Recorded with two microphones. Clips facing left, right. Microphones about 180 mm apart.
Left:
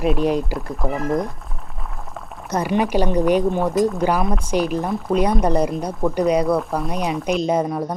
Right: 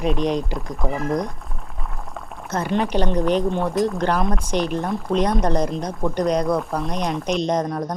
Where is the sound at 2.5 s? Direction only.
10° left (ahead or behind).